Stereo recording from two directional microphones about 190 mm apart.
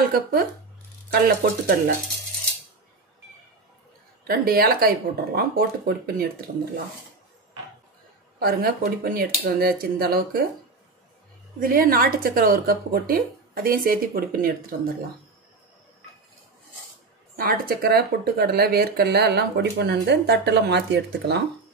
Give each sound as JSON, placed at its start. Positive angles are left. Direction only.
{"t": 0.1, "sound": "speech", "side_deg": -50}
{"t": 4.2, "sound": "speech", "side_deg": -50}
{"t": 8.4, "sound": "speech", "side_deg": -55}
{"t": 11.6, "sound": "speech", "side_deg": -50}
{"t": 17.4, "sound": "speech", "side_deg": -50}